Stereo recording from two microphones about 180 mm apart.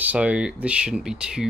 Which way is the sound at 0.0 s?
10° right (ahead or behind).